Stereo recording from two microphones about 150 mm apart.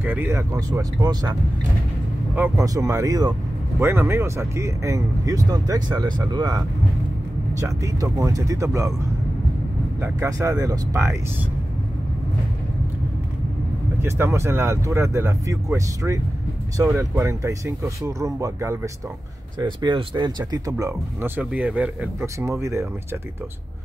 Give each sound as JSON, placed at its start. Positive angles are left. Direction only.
{"t": 0.0, "sound": "speech", "side_deg": -15}
{"t": 2.3, "sound": "speech", "side_deg": -15}
{"t": 9.9, "sound": "speech", "side_deg": -15}
{"t": 14.0, "sound": "speech", "side_deg": -15}
{"t": 19.6, "sound": "speech", "side_deg": -30}
{"t": 20.8, "sound": "speech", "side_deg": -15}